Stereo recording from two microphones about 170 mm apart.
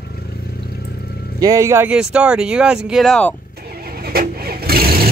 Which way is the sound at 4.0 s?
65° right (ahead or behind).